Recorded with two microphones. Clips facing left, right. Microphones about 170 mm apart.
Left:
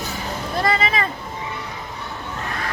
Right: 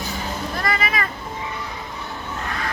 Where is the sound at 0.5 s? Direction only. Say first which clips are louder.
Left 5 dB; 25° left (ahead or behind).